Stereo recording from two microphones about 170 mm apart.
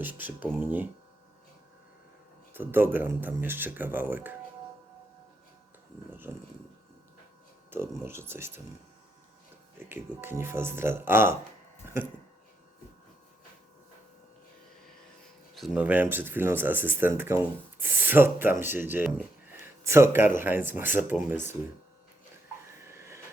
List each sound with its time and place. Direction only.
0.0 s speech: 10° right (ahead or behind)
2.5 s speech: 10° right (ahead or behind)
6.3 s speech: 15° right (ahead or behind)
7.7 s speech: 15° right (ahead or behind)
9.7 s speech: 15° right (ahead or behind)
15.5 s speech: 5° right (ahead or behind)
22.8 s train: 15° right (ahead or behind)